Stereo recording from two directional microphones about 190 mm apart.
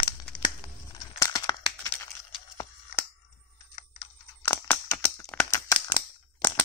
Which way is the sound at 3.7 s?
30° left (ahead or behind).